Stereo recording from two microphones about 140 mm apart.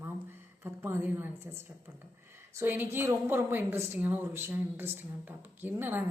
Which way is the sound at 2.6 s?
15° right (ahead or behind).